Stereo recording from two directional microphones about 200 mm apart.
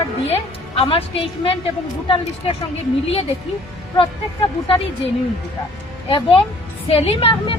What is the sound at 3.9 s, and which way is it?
Speech, 25° left (ahead or behind).